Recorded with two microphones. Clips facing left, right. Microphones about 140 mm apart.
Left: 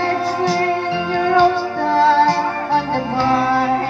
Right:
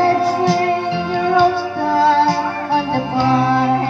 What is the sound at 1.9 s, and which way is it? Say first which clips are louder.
Music: even; 10° right (ahead or behind).